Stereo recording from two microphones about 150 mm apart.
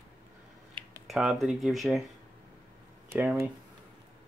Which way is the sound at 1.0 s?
Centre (ahead or behind).